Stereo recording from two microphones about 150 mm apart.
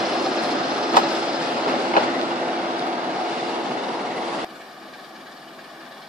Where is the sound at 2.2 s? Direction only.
10° right (ahead or behind).